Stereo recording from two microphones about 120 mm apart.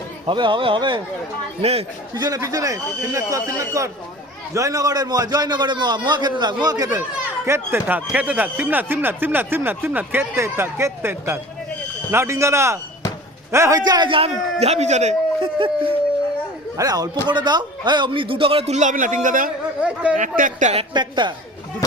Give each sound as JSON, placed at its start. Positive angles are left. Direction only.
{"t": 0.3, "sound": "a man's voice", "side_deg": -40}
{"t": 2.1, "sound": "a man's voice", "side_deg": -30}
{"t": 7.4, "sound": "a man's voice", "side_deg": -20}
{"t": 14.6, "sound": "speech", "side_deg": -65}
{"t": 15.4, "sound": "a sound", "side_deg": -45}
{"t": 16.7, "sound": "a man's voice", "side_deg": -30}
{"t": 19.8, "sound": "speech", "side_deg": -10}
{"t": 20.1, "sound": "speech", "side_deg": -90}
{"t": 20.9, "sound": "a man's voice", "side_deg": -40}